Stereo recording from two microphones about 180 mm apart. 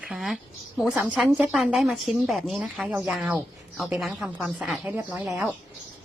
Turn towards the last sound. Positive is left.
turn(degrees=-10)  # may be behind; listen again after turning